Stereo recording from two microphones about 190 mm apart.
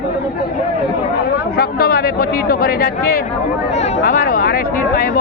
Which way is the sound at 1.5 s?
55° left (ahead or behind).